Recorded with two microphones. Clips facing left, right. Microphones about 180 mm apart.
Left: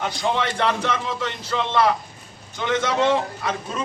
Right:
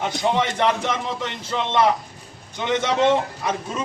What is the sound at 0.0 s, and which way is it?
A man's voice, 20° right (ahead or behind).